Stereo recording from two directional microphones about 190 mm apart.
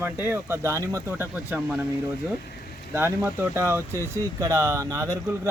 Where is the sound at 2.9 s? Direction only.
10° right (ahead or behind).